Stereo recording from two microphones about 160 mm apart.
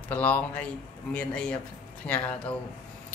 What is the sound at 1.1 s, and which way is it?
Speech, 5° left (ahead or behind).